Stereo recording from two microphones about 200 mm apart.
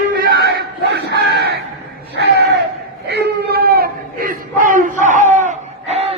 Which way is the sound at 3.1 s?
55° right (ahead or behind).